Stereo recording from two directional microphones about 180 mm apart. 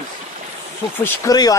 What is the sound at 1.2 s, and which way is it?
Speech, 20° left (ahead or behind).